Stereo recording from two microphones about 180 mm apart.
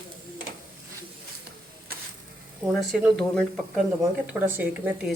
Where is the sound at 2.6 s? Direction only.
Centre (ahead or behind).